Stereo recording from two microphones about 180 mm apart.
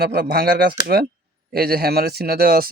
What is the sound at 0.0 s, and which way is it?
A man's voice, 60° right (ahead or behind).